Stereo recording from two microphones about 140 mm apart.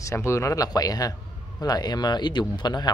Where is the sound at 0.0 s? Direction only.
20° left (ahead or behind).